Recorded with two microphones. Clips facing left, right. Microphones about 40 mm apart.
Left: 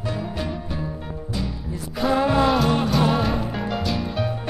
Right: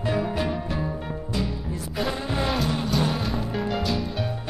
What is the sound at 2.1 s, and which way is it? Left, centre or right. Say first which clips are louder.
Music: left 9 dB; left.